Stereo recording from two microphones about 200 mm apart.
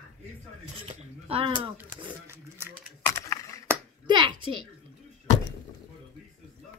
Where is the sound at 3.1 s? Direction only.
15° left (ahead or behind).